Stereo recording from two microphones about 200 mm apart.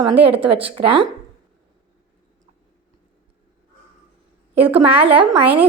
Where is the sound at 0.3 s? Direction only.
25° right (ahead or behind).